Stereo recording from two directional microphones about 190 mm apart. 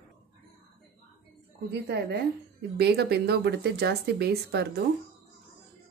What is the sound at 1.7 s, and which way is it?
Speech, 60° right (ahead or behind).